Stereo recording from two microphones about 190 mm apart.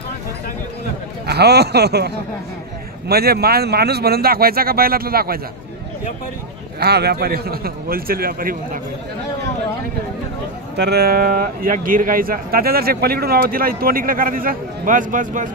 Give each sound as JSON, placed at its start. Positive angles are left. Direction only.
{"t": 1.2, "sound": "speech", "side_deg": -60}
{"t": 6.8, "sound": "speech", "side_deg": -55}
{"t": 10.8, "sound": "speech", "side_deg": -55}